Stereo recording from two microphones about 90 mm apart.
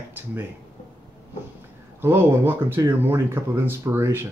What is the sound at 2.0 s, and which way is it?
Speech, 25° right (ahead or behind).